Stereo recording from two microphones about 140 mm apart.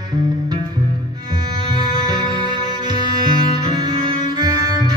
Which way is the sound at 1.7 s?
30° right (ahead or behind).